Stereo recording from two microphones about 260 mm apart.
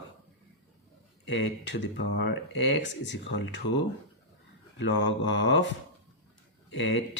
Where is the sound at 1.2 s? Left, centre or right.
Left.